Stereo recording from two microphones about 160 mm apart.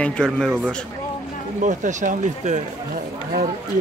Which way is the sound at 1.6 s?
50° right (ahead or behind).